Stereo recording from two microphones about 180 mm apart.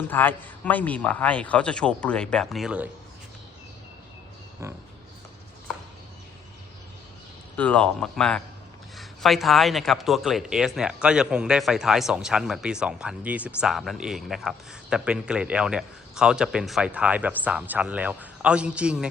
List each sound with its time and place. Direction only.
0.1 s a man's voice: 10° left (ahead or behind); by 2.9 s 5° right (ahead or behind)
4.6 s speech: 15° right (ahead or behind)
7.5 s speech: 10° left (ahead or behind)